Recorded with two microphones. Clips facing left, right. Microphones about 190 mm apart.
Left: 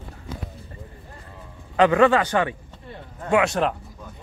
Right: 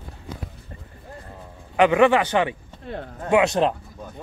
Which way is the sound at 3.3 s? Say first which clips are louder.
Right 2 dB; 20° right (ahead or behind).